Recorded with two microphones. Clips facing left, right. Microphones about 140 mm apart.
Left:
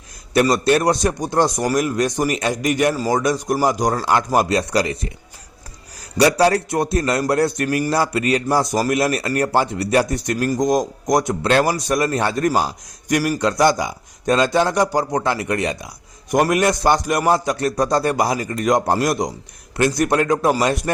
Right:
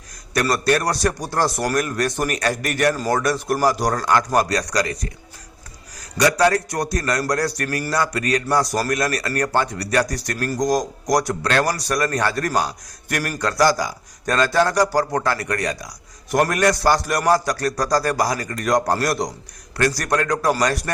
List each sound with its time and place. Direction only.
0.4 s a man's voice: 20° left (ahead or behind)
7.9 s speech: 30° left (ahead or behind)
11.6 s a man's voice: 15° left (ahead or behind)
11.9 s a man's voice: 25° left (ahead or behind)
13.4 s speech: 20° left (ahead or behind)